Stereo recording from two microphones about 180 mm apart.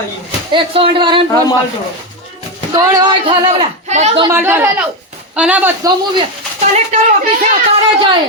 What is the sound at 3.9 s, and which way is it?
Speech, 40° right (ahead or behind).